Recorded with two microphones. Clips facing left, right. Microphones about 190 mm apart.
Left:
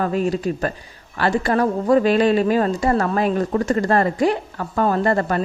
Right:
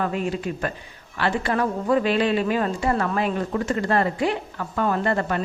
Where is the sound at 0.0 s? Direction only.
40° left (ahead or behind).